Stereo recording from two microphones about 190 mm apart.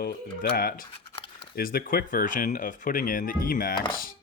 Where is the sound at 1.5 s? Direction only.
50° left (ahead or behind).